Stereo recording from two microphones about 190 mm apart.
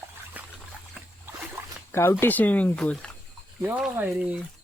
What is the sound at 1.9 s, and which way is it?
Speech, 15° left (ahead or behind).